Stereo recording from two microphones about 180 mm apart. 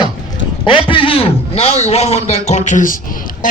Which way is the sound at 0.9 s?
30° left (ahead or behind).